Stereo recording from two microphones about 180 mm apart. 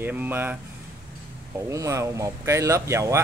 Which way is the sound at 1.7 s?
15° right (ahead or behind).